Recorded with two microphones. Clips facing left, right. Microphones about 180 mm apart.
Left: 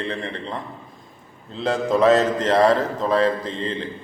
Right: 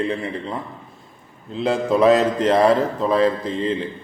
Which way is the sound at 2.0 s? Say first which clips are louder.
Right 1 dB; 10° right (ahead or behind).